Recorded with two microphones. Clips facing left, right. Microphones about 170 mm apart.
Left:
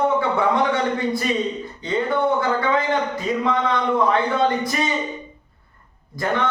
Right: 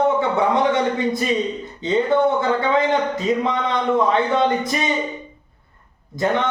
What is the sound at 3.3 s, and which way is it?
Speech, 20° right (ahead or behind).